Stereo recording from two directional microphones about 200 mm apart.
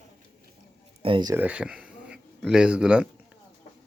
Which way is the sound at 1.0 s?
25° right (ahead or behind).